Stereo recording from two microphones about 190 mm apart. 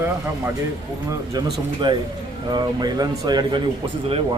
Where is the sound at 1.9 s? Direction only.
25° right (ahead or behind).